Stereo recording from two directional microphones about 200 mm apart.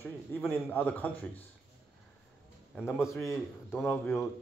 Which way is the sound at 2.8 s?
10° left (ahead or behind).